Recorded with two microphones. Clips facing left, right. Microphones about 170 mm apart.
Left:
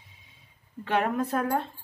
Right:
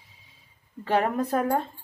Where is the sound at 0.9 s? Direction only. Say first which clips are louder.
Right 2 dB; 35° right (ahead or behind).